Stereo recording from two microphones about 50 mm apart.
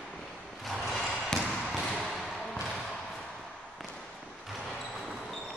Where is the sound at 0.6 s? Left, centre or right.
Centre.